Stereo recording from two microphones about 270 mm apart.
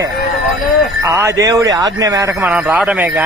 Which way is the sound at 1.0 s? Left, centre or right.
Centre.